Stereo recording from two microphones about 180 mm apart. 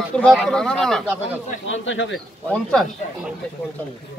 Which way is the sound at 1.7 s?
90° left.